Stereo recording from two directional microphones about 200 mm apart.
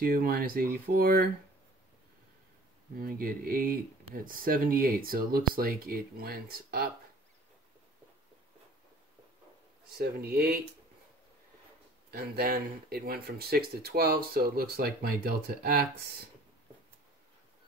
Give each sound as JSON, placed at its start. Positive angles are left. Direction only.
{"t": 0.0, "sound": "speech", "side_deg": -50}
{"t": 3.0, "sound": "speech", "side_deg": -45}
{"t": 9.9, "sound": "speech", "side_deg": -50}
{"t": 12.1, "sound": "speech", "side_deg": -50}